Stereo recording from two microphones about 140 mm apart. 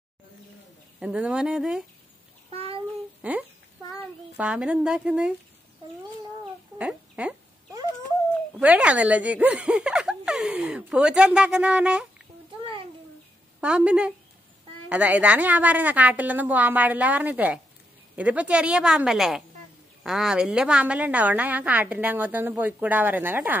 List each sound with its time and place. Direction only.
0.9 s speech: 5° right (ahead or behind)
2.5 s a sound: 45° right (ahead or behind)
3.2 s a woman's voice: 10° right (ahead or behind)
6.8 s a sound: 10° right (ahead or behind)
8.5 s speech: 10° right (ahead or behind)
13.6 s a woman's voice: 10° right (ahead or behind)